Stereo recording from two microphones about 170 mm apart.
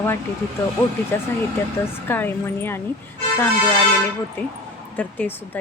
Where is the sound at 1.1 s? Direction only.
10° left (ahead or behind).